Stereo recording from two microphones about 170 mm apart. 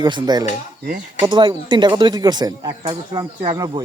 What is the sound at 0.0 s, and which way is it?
Speech, 25° right (ahead or behind).